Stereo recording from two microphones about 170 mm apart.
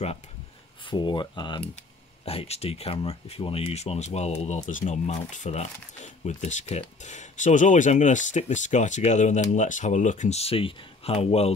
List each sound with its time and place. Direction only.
0.8 s speech: 25° left (ahead or behind)